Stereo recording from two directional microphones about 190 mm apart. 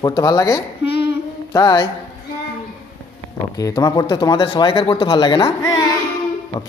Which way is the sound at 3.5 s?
20° left (ahead or behind).